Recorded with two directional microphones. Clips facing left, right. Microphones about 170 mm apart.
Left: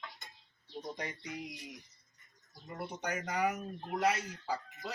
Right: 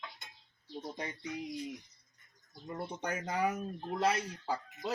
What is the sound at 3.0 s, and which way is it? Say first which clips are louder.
Speech: even; 30° right (ahead or behind).